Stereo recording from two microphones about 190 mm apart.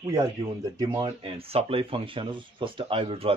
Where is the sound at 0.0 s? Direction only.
20° right (ahead or behind).